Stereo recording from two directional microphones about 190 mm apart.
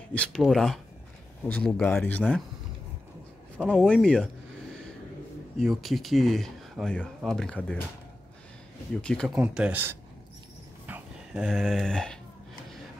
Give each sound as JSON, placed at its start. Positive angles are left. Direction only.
{"t": 0.1, "sound": "speech", "side_deg": 5}
{"t": 3.6, "sound": "speech", "side_deg": 5}
{"t": 5.6, "sound": "speech", "side_deg": 0}
{"t": 9.0, "sound": "speech", "side_deg": 5}
{"t": 10.9, "sound": "a sound", "side_deg": -5}